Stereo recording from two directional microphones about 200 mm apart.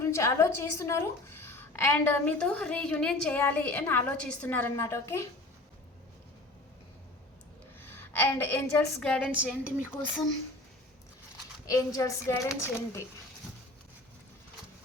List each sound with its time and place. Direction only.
0.0 s a woman's voice: 15° left (ahead or behind)
7.8 s a woman's voice: 10° left (ahead or behind); by 9.6 s 5° right (ahead or behind)
9.9 s a woman's voice: 10° left (ahead or behind)
11.9 s a woman's voice: 15° left (ahead or behind)